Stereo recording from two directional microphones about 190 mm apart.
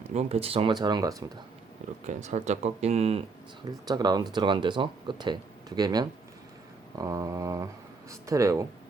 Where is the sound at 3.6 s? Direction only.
20° right (ahead or behind).